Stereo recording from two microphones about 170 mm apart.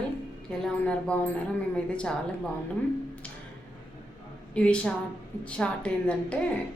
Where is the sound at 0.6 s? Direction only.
5° left (ahead or behind).